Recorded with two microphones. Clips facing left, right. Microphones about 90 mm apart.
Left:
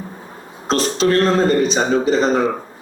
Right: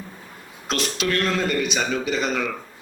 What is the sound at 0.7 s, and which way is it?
A man's voice, 35° left (ahead or behind).